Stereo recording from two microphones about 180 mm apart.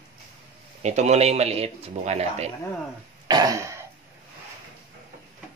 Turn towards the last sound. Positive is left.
turn(degrees=-15)  # may be behind; listen again after turning